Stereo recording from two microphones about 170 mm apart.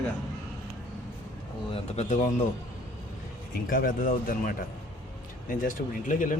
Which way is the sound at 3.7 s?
55° left (ahead or behind).